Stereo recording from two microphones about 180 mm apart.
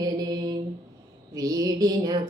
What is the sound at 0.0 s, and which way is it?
Mantra, 20° right (ahead or behind).